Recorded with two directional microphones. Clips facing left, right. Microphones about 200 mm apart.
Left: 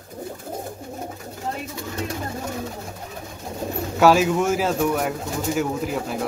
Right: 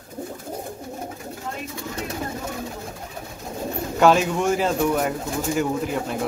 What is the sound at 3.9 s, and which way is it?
Speech, 5° left (ahead or behind).